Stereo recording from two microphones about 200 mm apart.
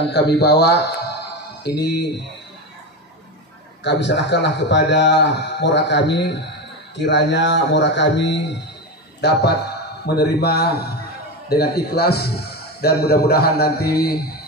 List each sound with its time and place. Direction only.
0.1 s a man's voice: 55° left (ahead or behind)
3.8 s a man's voice: 60° left (ahead or behind)